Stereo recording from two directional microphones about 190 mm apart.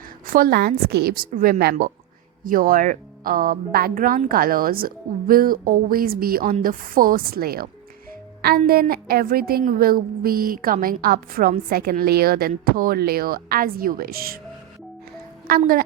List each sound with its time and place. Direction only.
0.3 s a woman's voice: 50° right (ahead or behind)
15.4 s a woman's voice: 50° right (ahead or behind)